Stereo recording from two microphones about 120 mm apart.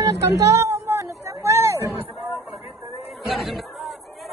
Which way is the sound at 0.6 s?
25° right (ahead or behind).